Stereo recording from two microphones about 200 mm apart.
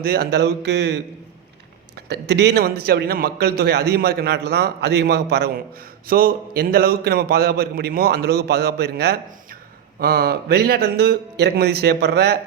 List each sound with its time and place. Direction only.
0.0 s speech: 50° right (ahead or behind)
2.0 s a man's voice: 55° right (ahead or behind)